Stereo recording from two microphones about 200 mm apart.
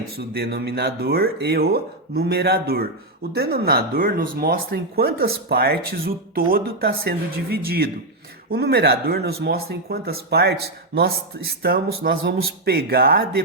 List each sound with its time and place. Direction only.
0.3 s speech: 50° right (ahead or behind)